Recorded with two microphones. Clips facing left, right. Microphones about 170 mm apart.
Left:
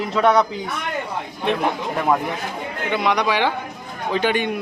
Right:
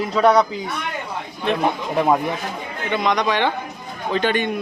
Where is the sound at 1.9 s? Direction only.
15° right (ahead or behind).